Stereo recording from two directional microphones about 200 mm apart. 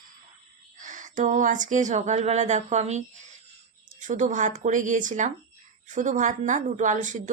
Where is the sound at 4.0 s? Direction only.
40° right (ahead or behind).